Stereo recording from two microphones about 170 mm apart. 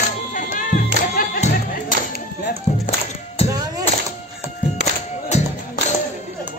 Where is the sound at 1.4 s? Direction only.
40° left (ahead or behind).